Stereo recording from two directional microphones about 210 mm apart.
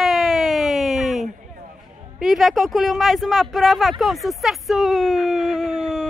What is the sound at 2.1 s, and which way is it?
Speech, centre (ahead or behind).